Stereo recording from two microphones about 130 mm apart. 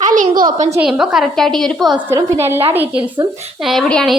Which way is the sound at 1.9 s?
20° right (ahead or behind).